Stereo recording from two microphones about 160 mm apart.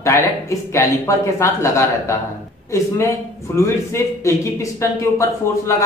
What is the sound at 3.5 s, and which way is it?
Speech, 15° left (ahead or behind).